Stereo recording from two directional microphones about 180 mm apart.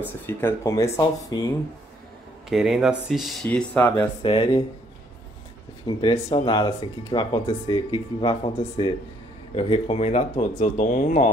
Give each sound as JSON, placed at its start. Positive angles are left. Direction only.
{"t": 0.3, "sound": "speech", "side_deg": 15}
{"t": 2.5, "sound": "speech", "side_deg": 0}
{"t": 4.2, "sound": "speech", "side_deg": 30}
{"t": 5.9, "sound": "speech", "side_deg": 25}